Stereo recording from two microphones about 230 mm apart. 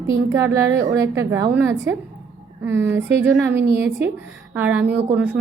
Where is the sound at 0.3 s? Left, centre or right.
Centre.